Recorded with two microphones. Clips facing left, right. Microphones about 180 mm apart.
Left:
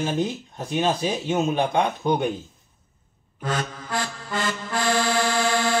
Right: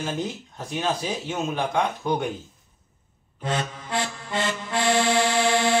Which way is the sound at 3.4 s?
25° right (ahead or behind).